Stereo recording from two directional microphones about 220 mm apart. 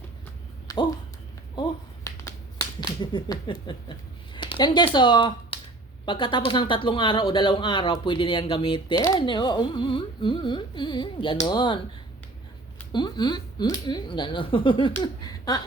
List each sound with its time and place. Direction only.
0.7 s speech: 15° left (ahead or behind)
2.0 s a sound: 15° left (ahead or behind)
4.4 s speech: 20° left (ahead or behind)
12.9 s speech: 20° left (ahead or behind)